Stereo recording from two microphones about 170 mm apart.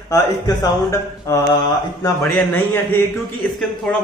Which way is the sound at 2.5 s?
10° left (ahead or behind).